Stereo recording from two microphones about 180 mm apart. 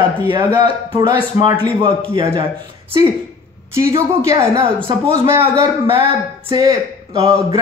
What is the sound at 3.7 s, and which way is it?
Speech, 15° right (ahead or behind).